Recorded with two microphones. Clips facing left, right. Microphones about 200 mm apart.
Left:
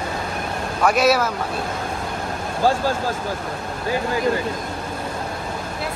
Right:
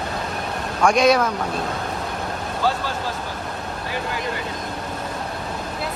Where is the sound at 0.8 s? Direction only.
5° left (ahead or behind).